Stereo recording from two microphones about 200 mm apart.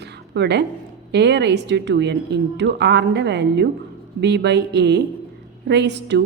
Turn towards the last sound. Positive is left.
turn(degrees=-60)  # may be behind; listen again after turning